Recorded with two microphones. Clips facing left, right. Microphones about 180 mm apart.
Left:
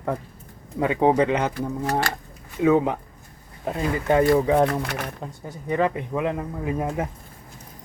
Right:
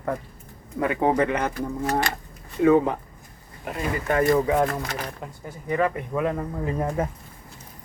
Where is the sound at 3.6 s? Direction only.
25° left (ahead or behind); by 7.1 s 10° left (ahead or behind).